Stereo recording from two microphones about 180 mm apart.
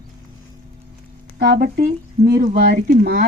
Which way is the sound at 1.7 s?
60° right (ahead or behind).